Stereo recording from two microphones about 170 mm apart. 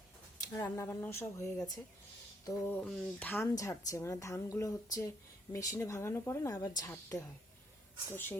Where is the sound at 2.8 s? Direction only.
10° left (ahead or behind).